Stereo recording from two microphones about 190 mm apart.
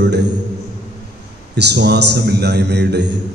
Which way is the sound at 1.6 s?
60° right (ahead or behind).